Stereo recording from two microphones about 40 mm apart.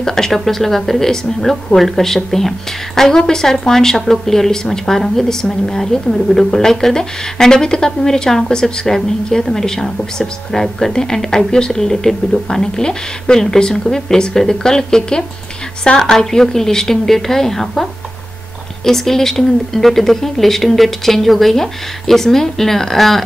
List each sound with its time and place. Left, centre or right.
0.0 s a woman's voice: centre
18.9 s a woman's voice: centre